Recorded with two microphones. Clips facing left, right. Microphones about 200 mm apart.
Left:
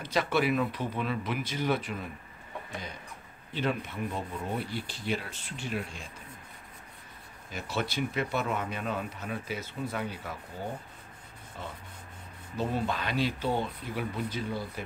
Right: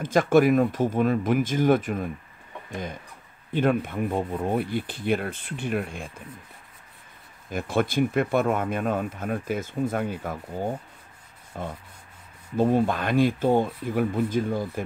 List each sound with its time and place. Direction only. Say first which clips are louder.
0.0 s speech: right 9 dB; 50° right (ahead or behind)
3.5 s speech: right 8 dB; 50° right (ahead or behind)
7.5 s speech: right 9 dB; 50° right (ahead or behind)
11.6 s speech: right 8 dB; 50° right (ahead or behind)